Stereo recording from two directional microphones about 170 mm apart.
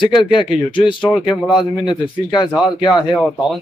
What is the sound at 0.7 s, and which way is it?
Speech, 30° left (ahead or behind).